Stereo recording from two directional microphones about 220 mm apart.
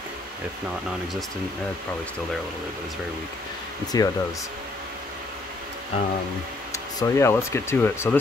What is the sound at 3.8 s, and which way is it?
Speech, 15° left (ahead or behind).